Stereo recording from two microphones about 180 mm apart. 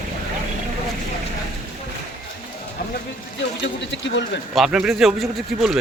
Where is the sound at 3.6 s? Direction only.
80° left.